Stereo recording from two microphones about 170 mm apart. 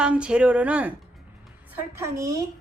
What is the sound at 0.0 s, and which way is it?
Speech, 5° right (ahead or behind).